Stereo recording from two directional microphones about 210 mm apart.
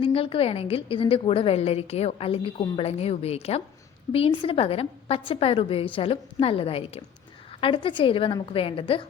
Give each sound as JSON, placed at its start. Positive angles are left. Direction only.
{"t": 0.0, "sound": "a woman's voice", "side_deg": 25}